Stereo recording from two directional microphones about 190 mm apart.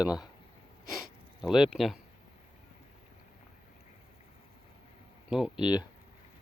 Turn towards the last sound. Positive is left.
turn(degrees=-5)  # may be behind; listen again after turning